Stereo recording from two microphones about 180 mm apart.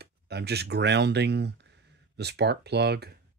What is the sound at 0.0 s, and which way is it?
Speech, 65° right (ahead or behind).